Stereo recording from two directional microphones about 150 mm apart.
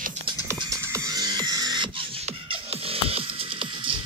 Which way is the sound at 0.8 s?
20° right (ahead or behind).